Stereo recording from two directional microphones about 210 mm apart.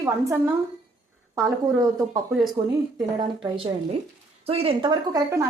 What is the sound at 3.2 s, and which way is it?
Speech, 25° right (ahead or behind).